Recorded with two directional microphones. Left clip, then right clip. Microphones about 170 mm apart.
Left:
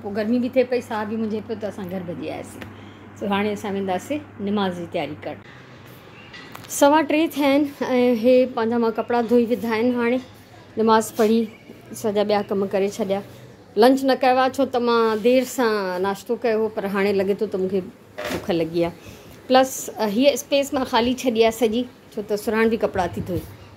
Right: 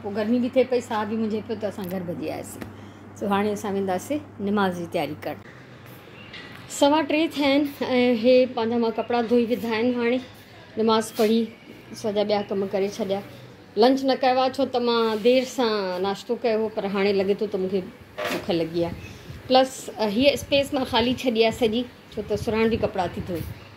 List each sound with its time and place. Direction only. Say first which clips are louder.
0.1 s a woman's voice: left 1 dB; centre (ahead or behind)
6.8 s a woman's voice: left 4 dB; 15° left (ahead or behind)